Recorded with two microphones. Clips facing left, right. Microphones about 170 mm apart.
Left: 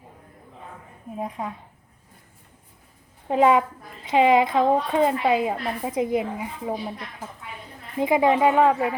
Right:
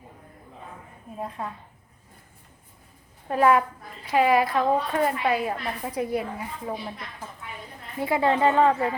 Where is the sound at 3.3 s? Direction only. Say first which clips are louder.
Left 2 dB; 20° left (ahead or behind).